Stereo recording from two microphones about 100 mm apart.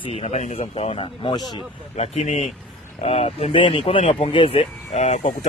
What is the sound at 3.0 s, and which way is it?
Speech, 90° left.